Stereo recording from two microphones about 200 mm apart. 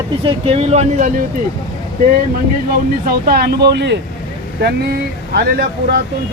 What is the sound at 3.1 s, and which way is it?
Speech, 50° right (ahead or behind).